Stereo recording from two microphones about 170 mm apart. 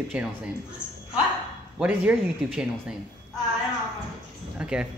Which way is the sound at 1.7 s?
5° right (ahead or behind).